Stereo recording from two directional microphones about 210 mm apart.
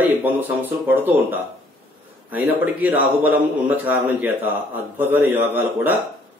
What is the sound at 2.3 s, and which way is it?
Speech, 10° right (ahead or behind).